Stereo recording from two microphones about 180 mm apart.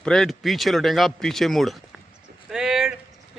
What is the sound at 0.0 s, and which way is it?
Speech, 5° left (ahead or behind).